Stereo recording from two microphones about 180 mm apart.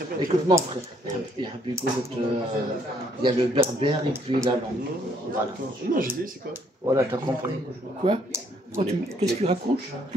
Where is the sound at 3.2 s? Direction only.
30° right (ahead or behind).